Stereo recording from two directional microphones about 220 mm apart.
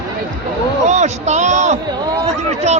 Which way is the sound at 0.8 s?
30° right (ahead or behind).